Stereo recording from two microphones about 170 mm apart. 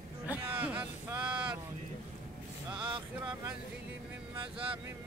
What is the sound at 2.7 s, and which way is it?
Speech, 30° right (ahead or behind).